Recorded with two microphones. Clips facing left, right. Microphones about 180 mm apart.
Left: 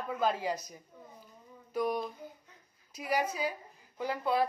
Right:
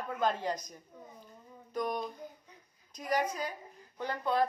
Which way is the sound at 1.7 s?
10° left (ahead or behind).